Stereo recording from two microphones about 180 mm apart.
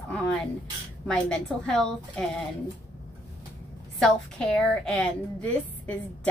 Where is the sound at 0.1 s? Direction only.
5° left (ahead or behind).